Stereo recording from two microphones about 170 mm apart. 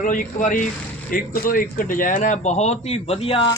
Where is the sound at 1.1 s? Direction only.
60° left (ahead or behind); by 3.5 s 35° left (ahead or behind).